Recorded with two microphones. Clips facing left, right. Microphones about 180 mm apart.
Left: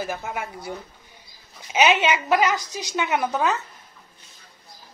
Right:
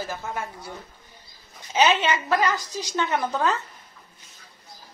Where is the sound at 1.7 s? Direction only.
15° left (ahead or behind).